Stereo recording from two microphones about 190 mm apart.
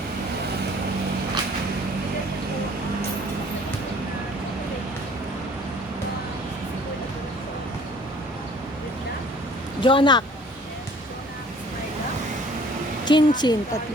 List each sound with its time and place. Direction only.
9.8 s a woman's voice: 25° left (ahead or behind)
13.1 s a woman's voice: 25° left (ahead or behind)